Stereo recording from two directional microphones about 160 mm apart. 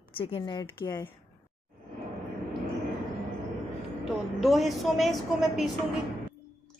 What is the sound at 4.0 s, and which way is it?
A woman's voice, centre (ahead or behind).